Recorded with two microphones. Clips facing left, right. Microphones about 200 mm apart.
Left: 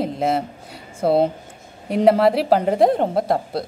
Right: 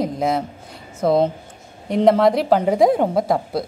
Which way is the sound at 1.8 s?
5° left (ahead or behind).